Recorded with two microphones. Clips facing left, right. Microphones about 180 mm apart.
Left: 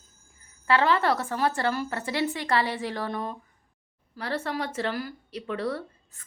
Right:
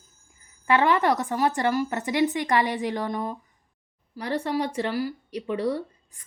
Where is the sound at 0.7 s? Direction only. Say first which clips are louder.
Right 2 dB; 15° right (ahead or behind).